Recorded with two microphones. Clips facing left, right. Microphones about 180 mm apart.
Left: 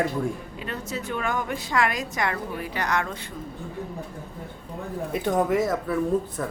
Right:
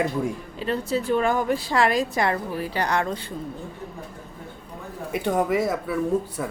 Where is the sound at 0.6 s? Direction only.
30° right (ahead or behind).